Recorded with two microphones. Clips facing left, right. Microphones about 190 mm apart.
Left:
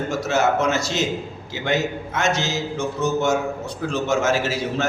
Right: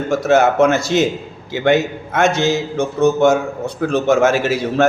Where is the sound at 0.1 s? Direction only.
55° right (ahead or behind).